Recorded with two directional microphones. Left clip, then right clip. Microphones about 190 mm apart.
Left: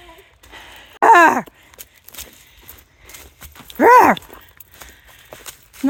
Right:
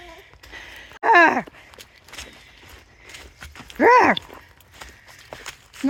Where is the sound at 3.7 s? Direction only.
40° left (ahead or behind).